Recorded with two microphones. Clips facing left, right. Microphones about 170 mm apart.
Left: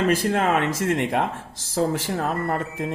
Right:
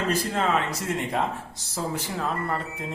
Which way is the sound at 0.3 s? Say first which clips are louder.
Left 4 dB; 70° left (ahead or behind).